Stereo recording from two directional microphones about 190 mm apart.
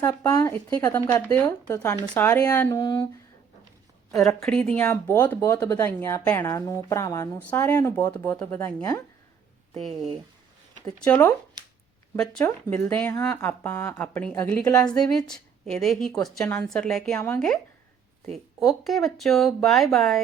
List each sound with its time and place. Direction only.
0.0 s speech: 15° left (ahead or behind)
4.4 s speech: 5° left (ahead or behind)
9.7 s a woman's voice: centre (ahead or behind)
11.1 s speech: 5° left (ahead or behind)
14.8 s a woman's voice: 5° left (ahead or behind)